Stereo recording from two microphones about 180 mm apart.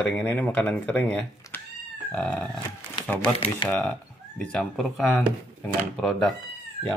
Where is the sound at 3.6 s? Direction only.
25° left (ahead or behind).